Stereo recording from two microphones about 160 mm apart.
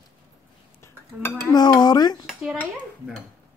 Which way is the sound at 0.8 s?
20° left (ahead or behind).